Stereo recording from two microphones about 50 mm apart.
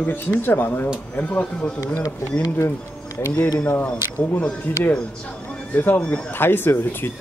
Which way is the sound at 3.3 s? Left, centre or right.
Left.